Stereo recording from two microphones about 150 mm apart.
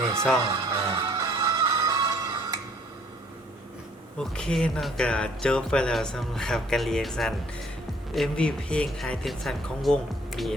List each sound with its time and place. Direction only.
0.4 s music: 25° right (ahead or behind)
4.2 s speech: 5° left (ahead or behind)